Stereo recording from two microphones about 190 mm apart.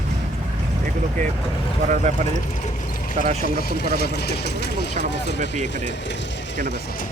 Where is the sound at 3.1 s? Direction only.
40° right (ahead or behind).